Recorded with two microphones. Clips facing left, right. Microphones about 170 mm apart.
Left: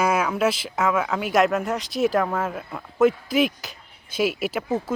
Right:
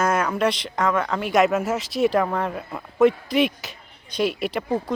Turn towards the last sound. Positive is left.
turn(degrees=5)  # may be behind; listen again after turning